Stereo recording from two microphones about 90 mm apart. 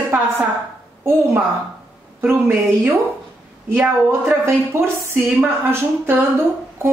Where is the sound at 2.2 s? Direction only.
25° right (ahead or behind).